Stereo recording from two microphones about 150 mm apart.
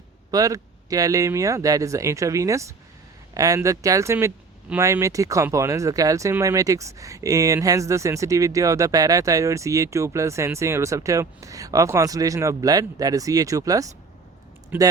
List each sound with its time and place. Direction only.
0.3 s speech: 25° right (ahead or behind)
14.7 s speech: 10° right (ahead or behind)